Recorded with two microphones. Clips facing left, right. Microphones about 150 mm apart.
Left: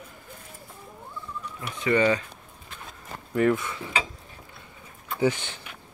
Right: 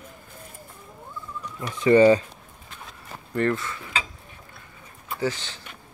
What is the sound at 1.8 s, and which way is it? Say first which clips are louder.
Speech: right 7 dB; 30° right (ahead or behind).